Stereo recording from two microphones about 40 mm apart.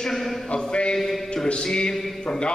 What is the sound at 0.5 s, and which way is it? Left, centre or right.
Speech, left.